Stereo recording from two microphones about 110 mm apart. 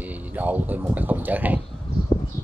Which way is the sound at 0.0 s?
15° right (ahead or behind).